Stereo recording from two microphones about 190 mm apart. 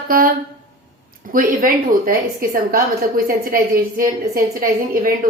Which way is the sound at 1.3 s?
45° right (ahead or behind).